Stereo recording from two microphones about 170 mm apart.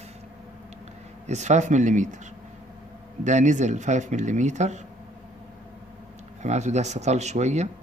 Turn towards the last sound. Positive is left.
turn(degrees=-40)  # may be behind; listen again after turning